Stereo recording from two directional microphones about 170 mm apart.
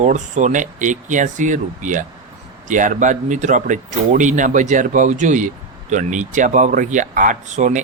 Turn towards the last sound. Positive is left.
turn(degrees=-45)  # may be behind; listen again after turning